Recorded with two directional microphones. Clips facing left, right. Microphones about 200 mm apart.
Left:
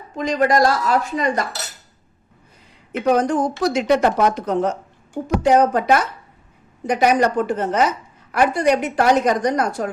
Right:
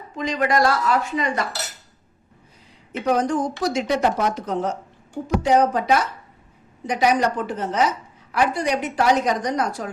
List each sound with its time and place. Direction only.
0.2 s speech: 40° left (ahead or behind)
3.1 s a woman's voice: 60° left (ahead or behind)